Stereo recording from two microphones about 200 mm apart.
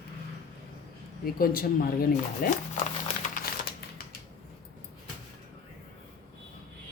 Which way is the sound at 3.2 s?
45° left (ahead or behind).